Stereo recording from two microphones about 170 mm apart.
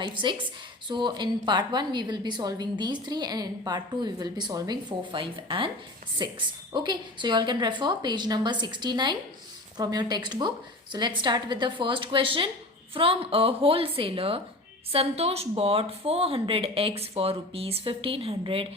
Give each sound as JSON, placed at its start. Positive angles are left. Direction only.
{"t": 0.0, "sound": "a woman's voice", "side_deg": -30}